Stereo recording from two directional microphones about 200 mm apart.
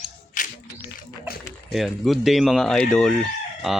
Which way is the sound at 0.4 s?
40° left (ahead or behind).